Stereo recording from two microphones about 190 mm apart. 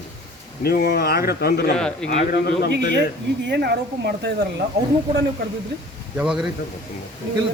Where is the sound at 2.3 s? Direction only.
70° left (ahead or behind).